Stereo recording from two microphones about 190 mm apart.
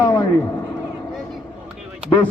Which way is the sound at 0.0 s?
20° left (ahead or behind).